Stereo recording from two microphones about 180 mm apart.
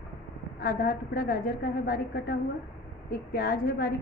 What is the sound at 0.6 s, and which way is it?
A woman's voice, 55° left (ahead or behind).